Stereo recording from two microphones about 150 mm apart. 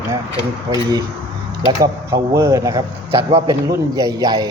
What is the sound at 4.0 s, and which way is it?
Speech, 25° right (ahead or behind).